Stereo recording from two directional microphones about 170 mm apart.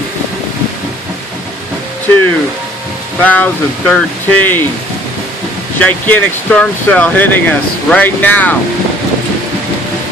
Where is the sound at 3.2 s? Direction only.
10° left (ahead or behind).